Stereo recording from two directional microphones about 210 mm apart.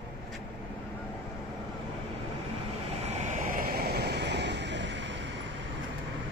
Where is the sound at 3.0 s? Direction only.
35° right (ahead or behind); by 5.4 s 55° right (ahead or behind).